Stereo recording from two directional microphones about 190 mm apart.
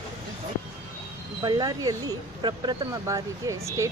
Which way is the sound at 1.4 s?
20° right (ahead or behind).